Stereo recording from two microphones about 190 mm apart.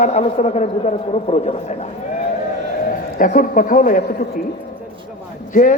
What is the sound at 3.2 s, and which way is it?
Speech, 45° left (ahead or behind).